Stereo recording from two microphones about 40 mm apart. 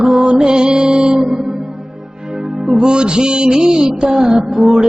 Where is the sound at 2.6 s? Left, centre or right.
Right.